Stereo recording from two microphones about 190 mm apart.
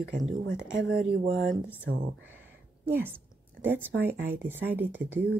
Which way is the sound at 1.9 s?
80° right.